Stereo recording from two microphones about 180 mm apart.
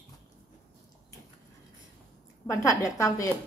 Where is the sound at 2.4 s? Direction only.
15° left (ahead or behind).